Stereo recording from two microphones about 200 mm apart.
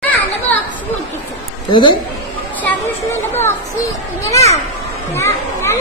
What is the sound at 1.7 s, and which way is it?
Speech, 25° left (ahead or behind).